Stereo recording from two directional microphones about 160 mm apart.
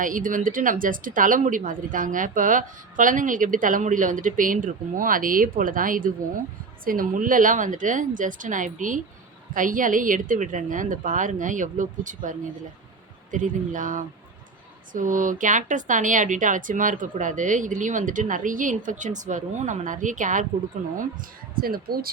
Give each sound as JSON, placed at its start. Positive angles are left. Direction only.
{"t": 0.0, "sound": "speech", "side_deg": -55}
{"t": 21.6, "sound": "speech", "side_deg": -70}